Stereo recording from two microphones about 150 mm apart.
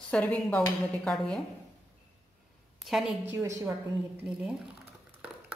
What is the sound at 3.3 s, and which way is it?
Speech, 20° right (ahead or behind).